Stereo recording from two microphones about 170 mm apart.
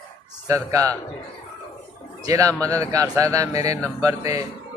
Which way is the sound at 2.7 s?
20° right (ahead or behind).